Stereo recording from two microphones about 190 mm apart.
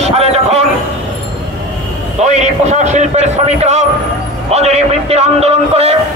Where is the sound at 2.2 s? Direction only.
35° right (ahead or behind).